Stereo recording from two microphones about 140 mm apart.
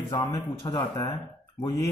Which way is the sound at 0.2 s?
25° left (ahead or behind).